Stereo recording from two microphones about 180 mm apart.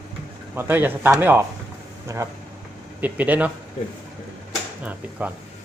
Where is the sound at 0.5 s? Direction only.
10° right (ahead or behind).